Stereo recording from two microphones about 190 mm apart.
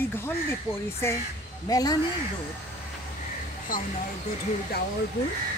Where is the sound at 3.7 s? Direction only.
45° left (ahead or behind).